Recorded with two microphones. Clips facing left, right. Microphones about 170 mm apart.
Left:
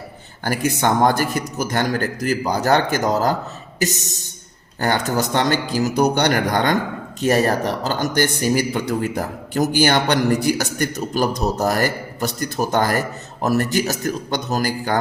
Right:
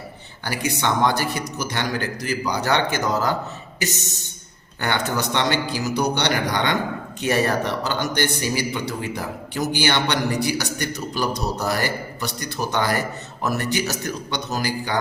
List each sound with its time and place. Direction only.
0.4 s speech: 50° left (ahead or behind)
3.8 s a sound: 40° left (ahead or behind)
4.8 s speech: 40° left (ahead or behind)